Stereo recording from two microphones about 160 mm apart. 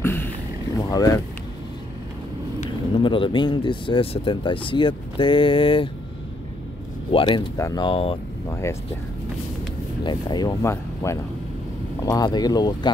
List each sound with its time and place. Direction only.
0.0 s a sound: 15° left (ahead or behind)
0.7 s speech: 25° left (ahead or behind)
3.0 s speech: 30° left (ahead or behind)
7.1 s speech: 30° left (ahead or behind)
8.6 s speech: 15° left (ahead or behind)
10.0 s speech: 25° left (ahead or behind)